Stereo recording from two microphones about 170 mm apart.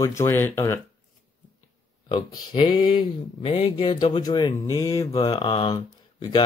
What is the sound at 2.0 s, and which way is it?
Speech, 25° left (ahead or behind).